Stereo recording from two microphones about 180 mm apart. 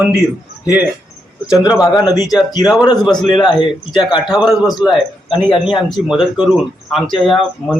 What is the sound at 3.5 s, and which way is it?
Speech, 25° left (ahead or behind).